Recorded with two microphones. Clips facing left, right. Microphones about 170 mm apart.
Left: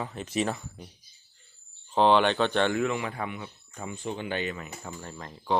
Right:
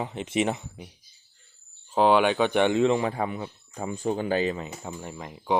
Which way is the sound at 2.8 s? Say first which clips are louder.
Right 6 dB; 30° right (ahead or behind).